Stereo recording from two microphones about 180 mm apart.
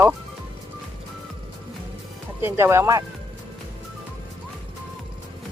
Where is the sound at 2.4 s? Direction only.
15° right (ahead or behind).